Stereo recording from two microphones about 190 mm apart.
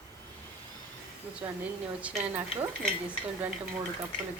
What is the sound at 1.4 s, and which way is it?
Speech, 10° right (ahead or behind).